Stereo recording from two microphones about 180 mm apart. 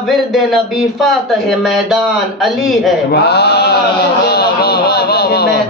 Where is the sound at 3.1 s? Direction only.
65° left (ahead or behind).